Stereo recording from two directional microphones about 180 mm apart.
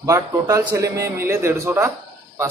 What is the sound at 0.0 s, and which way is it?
Speech, 15° right (ahead or behind).